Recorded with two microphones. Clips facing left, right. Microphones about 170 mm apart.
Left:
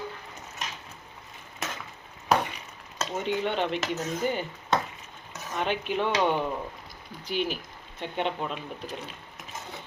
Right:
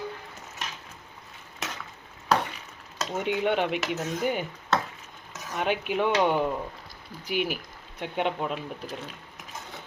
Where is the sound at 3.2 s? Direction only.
10° right (ahead or behind).